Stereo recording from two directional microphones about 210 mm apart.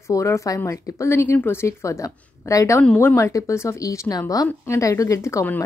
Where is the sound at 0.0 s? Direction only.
15° left (ahead or behind).